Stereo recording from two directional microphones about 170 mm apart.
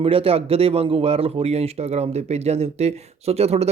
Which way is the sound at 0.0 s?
35° right (ahead or behind).